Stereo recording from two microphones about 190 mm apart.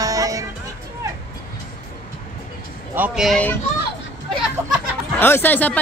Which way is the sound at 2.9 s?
5° right (ahead or behind).